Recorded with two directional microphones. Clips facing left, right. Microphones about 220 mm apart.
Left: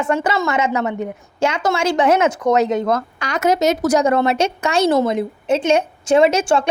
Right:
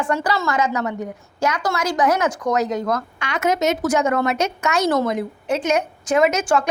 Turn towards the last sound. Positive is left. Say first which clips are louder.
# left 4 dB
turn(degrees=30)  # may be behind; listen again after turning